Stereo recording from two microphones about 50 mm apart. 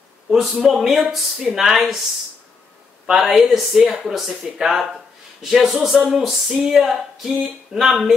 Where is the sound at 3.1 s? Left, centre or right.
Centre.